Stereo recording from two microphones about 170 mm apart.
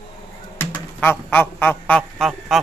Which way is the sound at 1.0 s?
10° left (ahead or behind).